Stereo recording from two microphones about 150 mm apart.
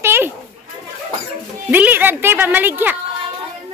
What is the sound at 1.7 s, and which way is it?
Speech, 10° right (ahead or behind).